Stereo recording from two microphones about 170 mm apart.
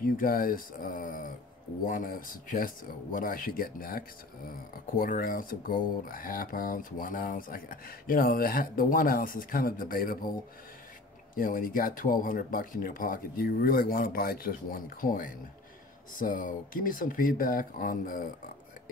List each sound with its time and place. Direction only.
0.0 s speech: 55° left (ahead or behind)
11.3 s speech: 55° left (ahead or behind)